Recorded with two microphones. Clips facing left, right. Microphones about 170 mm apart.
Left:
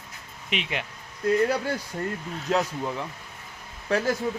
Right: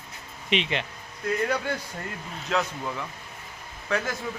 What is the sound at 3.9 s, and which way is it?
Speech, 35° left (ahead or behind).